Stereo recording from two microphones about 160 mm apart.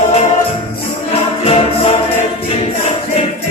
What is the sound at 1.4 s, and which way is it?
Music, 40° left (ahead or behind).